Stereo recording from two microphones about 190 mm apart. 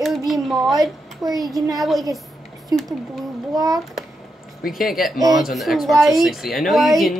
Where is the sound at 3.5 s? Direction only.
20° right (ahead or behind).